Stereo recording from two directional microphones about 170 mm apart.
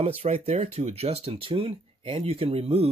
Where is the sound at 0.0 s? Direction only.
35° right (ahead or behind).